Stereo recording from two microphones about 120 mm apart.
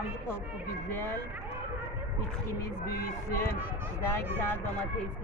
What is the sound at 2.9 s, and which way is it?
Speech, 25° left (ahead or behind).